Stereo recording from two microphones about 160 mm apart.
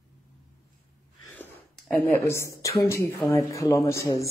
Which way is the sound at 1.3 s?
10° left (ahead or behind).